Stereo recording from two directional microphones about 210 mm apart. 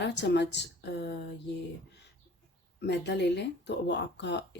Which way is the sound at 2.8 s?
55° left (ahead or behind).